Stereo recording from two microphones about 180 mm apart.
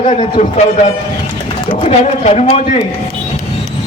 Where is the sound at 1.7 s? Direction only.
35° left (ahead or behind).